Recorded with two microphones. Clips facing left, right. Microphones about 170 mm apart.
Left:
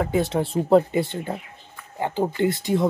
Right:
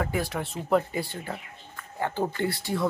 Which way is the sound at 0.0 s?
25° left (ahead or behind).